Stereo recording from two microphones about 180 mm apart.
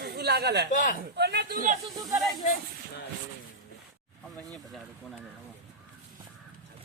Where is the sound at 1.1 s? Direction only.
70° right (ahead or behind).